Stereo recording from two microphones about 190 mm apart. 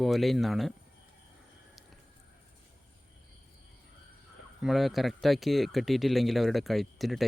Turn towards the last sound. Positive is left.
turn(degrees=0)  # may be behind; listen again after turning